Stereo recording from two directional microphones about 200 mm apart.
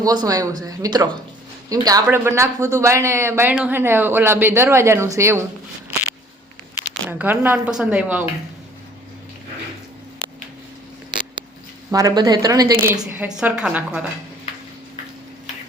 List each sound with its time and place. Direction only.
0.0 s speech: 20° right (ahead or behind)
7.1 s speech: 10° right (ahead or behind)
11.9 s speech: 15° right (ahead or behind)